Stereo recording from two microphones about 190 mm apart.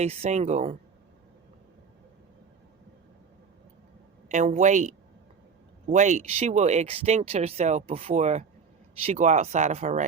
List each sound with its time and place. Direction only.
0.0 s speech: 35° right (ahead or behind)
4.3 s speech: 35° right (ahead or behind)